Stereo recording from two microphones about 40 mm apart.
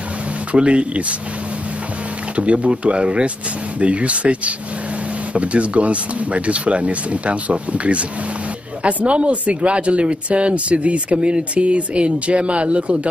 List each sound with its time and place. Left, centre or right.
0.5 s speech: right
2.3 s speech: right